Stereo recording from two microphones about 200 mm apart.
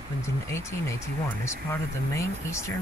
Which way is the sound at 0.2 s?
15° left (ahead or behind).